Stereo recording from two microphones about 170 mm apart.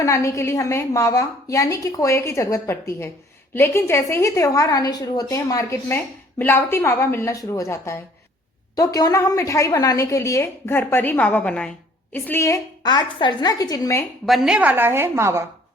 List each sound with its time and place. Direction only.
0.0 s a woman's voice: 15° left (ahead or behind)
14.3 s a woman's voice: centre (ahead or behind)